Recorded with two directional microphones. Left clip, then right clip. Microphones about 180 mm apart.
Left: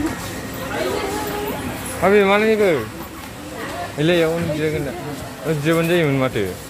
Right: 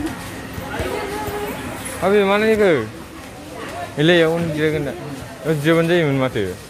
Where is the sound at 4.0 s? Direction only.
30° right (ahead or behind).